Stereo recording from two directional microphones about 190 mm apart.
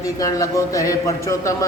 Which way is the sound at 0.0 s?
20° left (ahead or behind).